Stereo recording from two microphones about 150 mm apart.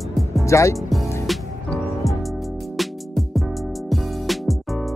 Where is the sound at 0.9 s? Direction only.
Centre (ahead or behind).